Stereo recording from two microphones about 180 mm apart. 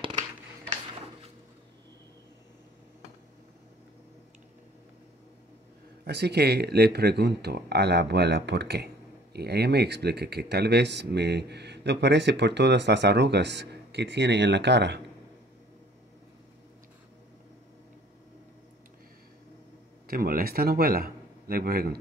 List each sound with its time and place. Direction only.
6.0 s speech: 65° right (ahead or behind)
20.1 s a man's voice: 55° right (ahead or behind)